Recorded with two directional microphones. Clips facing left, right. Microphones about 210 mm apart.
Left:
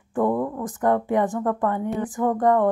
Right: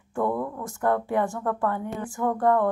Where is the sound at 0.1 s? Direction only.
20° left (ahead or behind).